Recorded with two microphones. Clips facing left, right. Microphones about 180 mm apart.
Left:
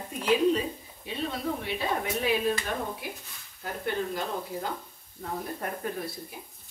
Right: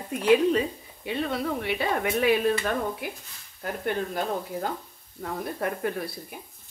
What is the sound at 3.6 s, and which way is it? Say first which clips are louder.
Speech: right 3 dB; 55° right (ahead or behind).